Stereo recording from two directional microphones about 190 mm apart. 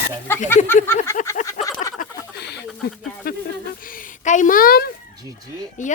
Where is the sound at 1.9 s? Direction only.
55° left (ahead or behind).